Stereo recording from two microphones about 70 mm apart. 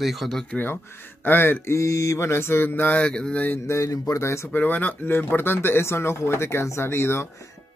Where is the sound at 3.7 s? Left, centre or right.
Left.